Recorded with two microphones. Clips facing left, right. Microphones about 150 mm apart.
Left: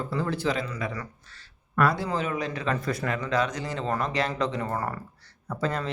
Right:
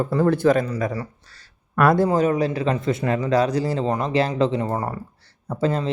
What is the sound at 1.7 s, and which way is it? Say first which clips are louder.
Speech: right 8 dB; 55° right (ahead or behind).